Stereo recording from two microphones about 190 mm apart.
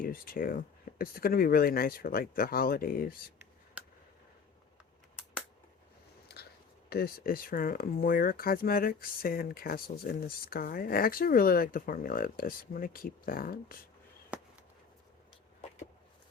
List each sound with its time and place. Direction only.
0.0 s speech: 50° left (ahead or behind)
6.2 s biting: 55° left (ahead or behind)
6.9 s speech: 50° left (ahead or behind)
14.3 s a sound: 5° right (ahead or behind)